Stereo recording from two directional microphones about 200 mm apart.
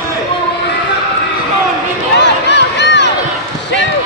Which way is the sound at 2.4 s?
60° left (ahead or behind).